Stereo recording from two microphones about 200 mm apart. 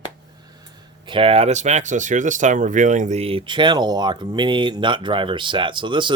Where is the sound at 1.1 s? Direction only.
30° right (ahead or behind).